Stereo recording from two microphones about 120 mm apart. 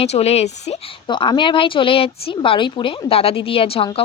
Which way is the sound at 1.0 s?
40° left (ahead or behind).